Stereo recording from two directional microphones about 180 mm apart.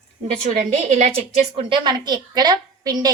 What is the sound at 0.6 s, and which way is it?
A woman's voice, 40° right (ahead or behind).